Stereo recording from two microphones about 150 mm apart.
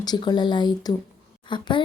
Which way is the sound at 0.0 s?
25° left (ahead or behind).